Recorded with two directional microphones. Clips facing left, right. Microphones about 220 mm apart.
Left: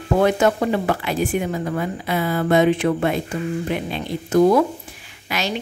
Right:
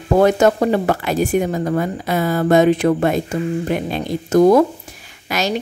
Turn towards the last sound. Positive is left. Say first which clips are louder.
# right 4 dB
turn(degrees=-40)  # may be behind; listen again after turning